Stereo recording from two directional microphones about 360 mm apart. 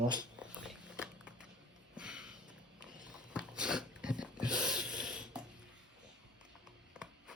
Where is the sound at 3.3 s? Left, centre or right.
Centre.